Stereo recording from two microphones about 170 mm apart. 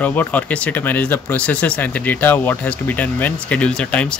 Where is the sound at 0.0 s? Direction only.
10° left (ahead or behind).